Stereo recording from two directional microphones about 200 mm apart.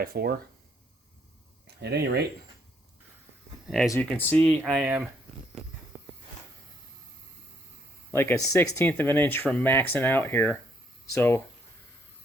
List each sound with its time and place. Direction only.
0.0 s speech: 50° right (ahead or behind)
1.6 s speech: 55° right (ahead or behind)
3.7 s speech: centre (ahead or behind)
8.1 s speech: 10° left (ahead or behind)